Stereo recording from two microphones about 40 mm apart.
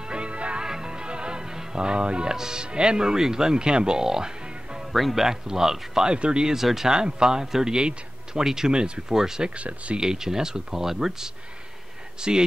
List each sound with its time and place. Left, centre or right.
0.1 s music: right
0.7 s music: centre
2.3 s speech: centre
4.9 s speech: centre
6.1 s speech: right
6.5 s speech: centre; by 9.0 s right
9.1 s speech: centre
9.6 s speech: right
9.9 s speech: centre